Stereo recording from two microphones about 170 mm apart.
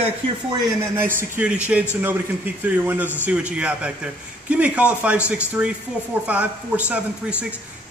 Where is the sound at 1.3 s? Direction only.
5° right (ahead or behind).